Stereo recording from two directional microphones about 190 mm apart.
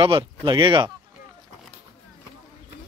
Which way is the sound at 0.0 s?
25° right (ahead or behind).